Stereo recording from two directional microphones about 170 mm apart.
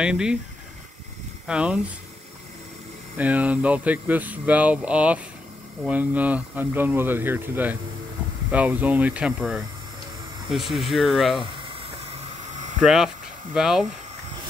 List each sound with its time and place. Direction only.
0.0 s speech: 5° right (ahead or behind)
1.5 s speech: 5° right (ahead or behind)
3.2 s speech: 10° right (ahead or behind)
12.5 s hum: 45° right (ahead or behind)
12.8 s speech: 5° right (ahead or behind)